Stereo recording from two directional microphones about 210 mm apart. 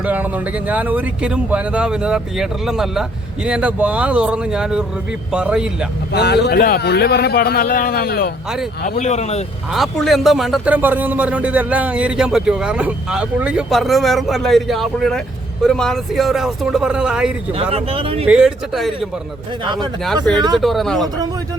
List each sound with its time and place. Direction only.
0.0 s speech: 10° right (ahead or behind)
6.1 s a man's voice: 50° left (ahead or behind)
8.8 s speech: 35° left (ahead or behind)
9.7 s speech: centre (ahead or behind)
17.6 s speech: 30° right (ahead or behind)
18.3 s speech: 5° right (ahead or behind)
20.3 s speech: 5° left (ahead or behind)